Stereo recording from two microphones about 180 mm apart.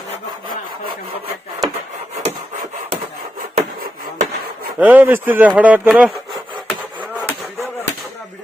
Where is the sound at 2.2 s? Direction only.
45° right (ahead or behind).